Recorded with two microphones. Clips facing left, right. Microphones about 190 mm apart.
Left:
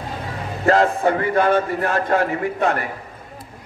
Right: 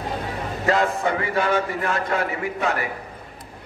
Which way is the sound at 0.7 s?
50° left (ahead or behind).